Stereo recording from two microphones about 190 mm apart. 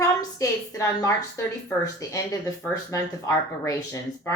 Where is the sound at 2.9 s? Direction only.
15° left (ahead or behind).